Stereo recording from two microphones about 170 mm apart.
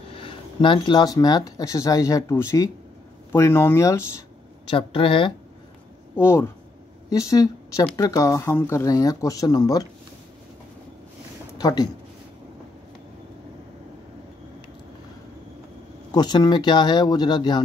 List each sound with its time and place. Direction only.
0.1 s speech: 30° left (ahead or behind); by 4.0 s 15° left (ahead or behind)
4.6 s speech: 30° left (ahead or behind)
6.1 s speech: 15° left (ahead or behind)
11.5 s speech: 25° left (ahead or behind)
16.1 s speech: 25° left (ahead or behind)